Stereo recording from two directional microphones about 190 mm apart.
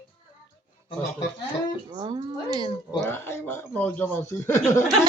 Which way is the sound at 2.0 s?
25° right (ahead or behind).